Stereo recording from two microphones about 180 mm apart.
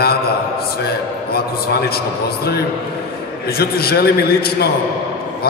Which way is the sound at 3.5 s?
60° left (ahead or behind).